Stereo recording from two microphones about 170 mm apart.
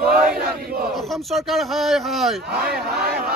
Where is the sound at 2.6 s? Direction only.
70° right (ahead or behind).